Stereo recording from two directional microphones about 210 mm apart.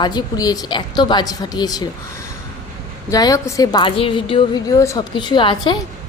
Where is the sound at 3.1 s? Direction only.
15° left (ahead or behind).